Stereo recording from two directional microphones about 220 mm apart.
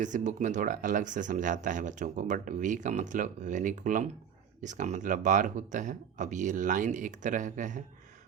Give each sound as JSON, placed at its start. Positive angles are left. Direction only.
{"t": 0.0, "sound": "speech", "side_deg": -35}